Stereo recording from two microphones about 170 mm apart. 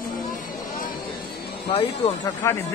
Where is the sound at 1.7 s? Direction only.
35° left (ahead or behind).